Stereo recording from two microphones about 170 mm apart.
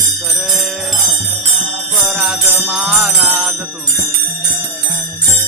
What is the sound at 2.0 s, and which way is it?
Music, centre (ahead or behind).